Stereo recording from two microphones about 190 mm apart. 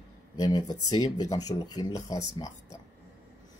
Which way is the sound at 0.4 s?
20° left (ahead or behind).